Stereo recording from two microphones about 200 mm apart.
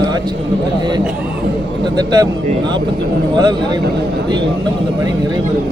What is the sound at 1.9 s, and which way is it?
Speech, 20° right (ahead or behind).